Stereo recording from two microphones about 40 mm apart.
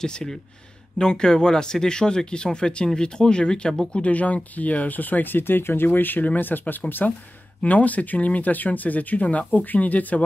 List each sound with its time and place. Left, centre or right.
0.0 s speech: centre
3.9 s speech: left
5.9 s speech: left
7.6 s speech: left